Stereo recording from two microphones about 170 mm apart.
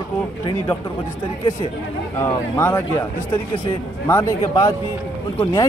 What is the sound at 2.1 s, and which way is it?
Speech, 15° left (ahead or behind).